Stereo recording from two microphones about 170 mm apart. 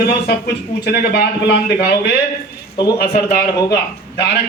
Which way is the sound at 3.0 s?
65° left (ahead or behind).